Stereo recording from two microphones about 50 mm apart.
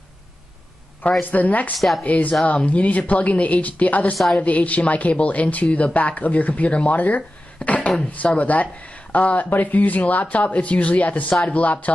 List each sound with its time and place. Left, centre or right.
1.3 s speech: left
1.8 s speech: centre
2.0 s speech: left